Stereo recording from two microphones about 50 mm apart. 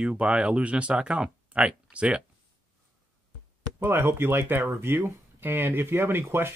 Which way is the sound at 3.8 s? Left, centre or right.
Right.